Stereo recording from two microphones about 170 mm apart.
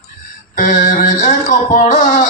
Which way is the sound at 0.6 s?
50° left (ahead or behind).